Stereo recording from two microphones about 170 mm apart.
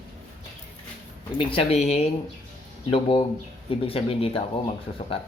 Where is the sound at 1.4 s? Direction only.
30° left (ahead or behind).